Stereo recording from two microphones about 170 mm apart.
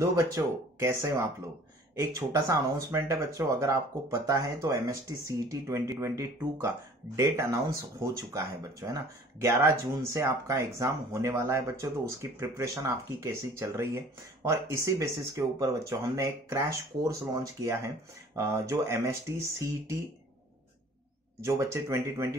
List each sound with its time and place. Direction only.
0.0 s speech: 20° right (ahead or behind)
21.5 s speech: 15° right (ahead or behind)